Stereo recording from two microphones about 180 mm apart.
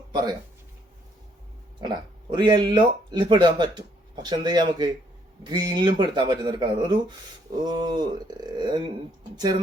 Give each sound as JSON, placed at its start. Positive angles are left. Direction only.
{"t": 0.1, "sound": "speech", "side_deg": -20}
{"t": 1.8, "sound": "speech", "side_deg": -25}